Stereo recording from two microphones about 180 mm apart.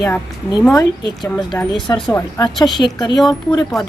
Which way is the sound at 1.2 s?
Centre (ahead or behind).